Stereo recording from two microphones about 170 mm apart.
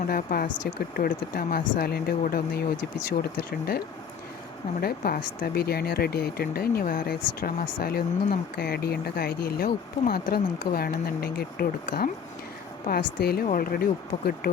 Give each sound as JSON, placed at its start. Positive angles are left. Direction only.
{"t": 0.1, "sound": "speech", "side_deg": 55}
{"t": 0.5, "sound": "speech", "side_deg": 90}
{"t": 1.0, "sound": "speech", "side_deg": 60}
{"t": 4.8, "sound": "speech", "side_deg": 65}